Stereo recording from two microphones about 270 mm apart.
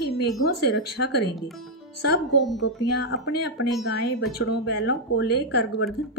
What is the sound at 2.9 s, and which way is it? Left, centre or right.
Speech, left.